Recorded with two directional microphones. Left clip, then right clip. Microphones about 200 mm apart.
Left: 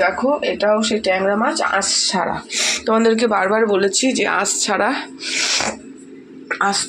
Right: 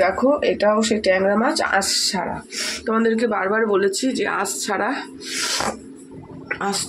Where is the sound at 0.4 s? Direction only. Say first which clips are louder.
Left 1 dB; 20° right (ahead or behind).